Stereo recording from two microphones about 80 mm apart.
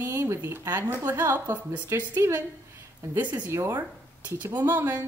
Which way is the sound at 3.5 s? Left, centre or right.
Right.